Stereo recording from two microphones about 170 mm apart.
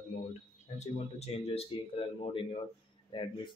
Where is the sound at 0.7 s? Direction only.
40° left (ahead or behind).